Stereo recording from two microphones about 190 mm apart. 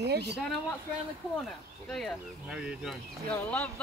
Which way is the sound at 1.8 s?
Centre (ahead or behind).